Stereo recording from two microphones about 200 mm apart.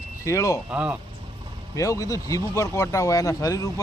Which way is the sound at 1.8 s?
15° left (ahead or behind).